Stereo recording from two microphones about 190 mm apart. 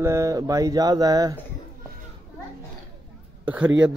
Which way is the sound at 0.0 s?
15° right (ahead or behind).